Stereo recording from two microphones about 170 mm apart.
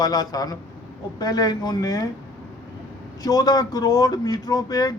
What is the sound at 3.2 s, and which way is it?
A man's voice, 20° left (ahead or behind).